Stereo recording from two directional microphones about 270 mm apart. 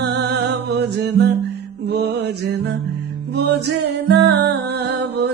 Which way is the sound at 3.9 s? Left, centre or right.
Right.